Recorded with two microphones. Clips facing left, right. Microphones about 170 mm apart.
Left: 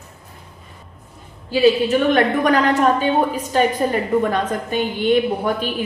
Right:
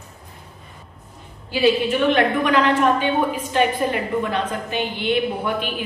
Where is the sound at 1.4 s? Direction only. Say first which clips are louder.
Left 3 dB; 40° left (ahead or behind).